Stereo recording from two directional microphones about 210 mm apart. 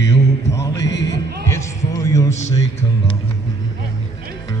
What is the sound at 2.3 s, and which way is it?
Music, 35° left (ahead or behind).